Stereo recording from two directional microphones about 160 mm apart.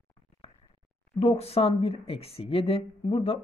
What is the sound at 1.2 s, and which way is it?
A woman's voice, 40° left (ahead or behind).